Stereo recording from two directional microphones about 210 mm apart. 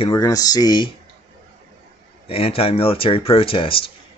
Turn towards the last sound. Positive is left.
turn(degrees=25)  # may be behind; listen again after turning